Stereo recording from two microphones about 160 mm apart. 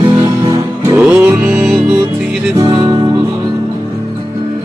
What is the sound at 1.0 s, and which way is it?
Music, 10° right (ahead or behind).